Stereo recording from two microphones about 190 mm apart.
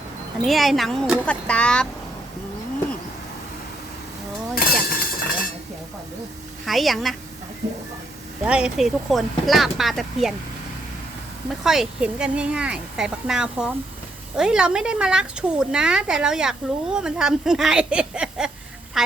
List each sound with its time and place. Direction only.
0.4 s speech: centre (ahead or behind)
4.5 s chink: 50° left (ahead or behind)
6.7 s speech: centre (ahead or behind)
8.4 s speech: 5° right (ahead or behind)
11.6 s speech: centre (ahead or behind)